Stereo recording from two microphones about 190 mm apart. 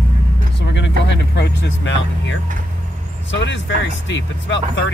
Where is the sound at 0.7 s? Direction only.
70° left (ahead or behind).